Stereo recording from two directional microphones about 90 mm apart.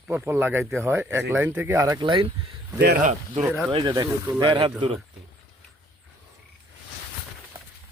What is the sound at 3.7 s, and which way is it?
Speech, 60° right (ahead or behind).